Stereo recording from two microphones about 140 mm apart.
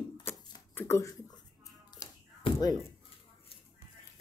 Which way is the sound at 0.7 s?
20° left (ahead or behind).